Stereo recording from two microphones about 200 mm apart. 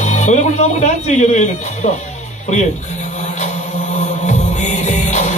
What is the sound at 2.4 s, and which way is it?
Chant, 35° left (ahead or behind).